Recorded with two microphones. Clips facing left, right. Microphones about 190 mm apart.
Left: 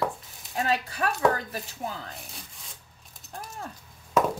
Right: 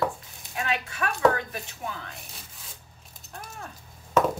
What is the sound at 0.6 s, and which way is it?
Speech, 35° left (ahead or behind).